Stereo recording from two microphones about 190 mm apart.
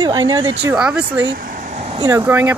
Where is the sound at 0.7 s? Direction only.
5° right (ahead or behind).